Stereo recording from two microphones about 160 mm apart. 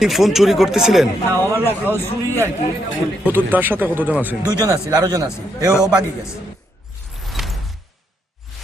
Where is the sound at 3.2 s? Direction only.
10° right (ahead or behind).